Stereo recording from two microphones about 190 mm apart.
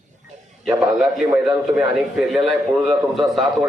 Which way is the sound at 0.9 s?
Centre (ahead or behind).